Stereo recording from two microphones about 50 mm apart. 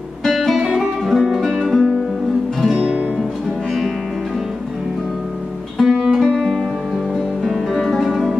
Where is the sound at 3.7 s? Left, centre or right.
Centre.